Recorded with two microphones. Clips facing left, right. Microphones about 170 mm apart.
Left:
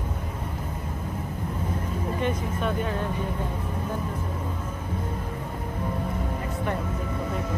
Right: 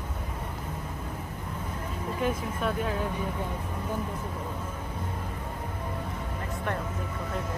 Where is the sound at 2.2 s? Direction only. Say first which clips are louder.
Even; 5° right (ahead or behind).